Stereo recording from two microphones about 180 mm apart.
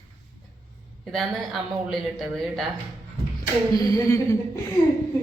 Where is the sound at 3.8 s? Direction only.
20° left (ahead or behind).